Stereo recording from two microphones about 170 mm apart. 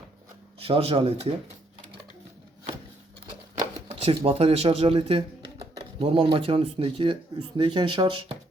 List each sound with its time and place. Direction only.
0.6 s speech: 35° right (ahead or behind)
3.2 s a sound: 30° right (ahead or behind)
6.3 s speech: 30° right (ahead or behind)